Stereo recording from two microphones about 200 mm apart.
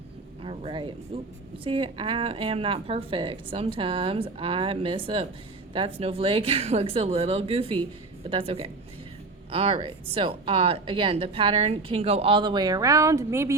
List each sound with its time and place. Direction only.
0.4 s speech: 25° right (ahead or behind)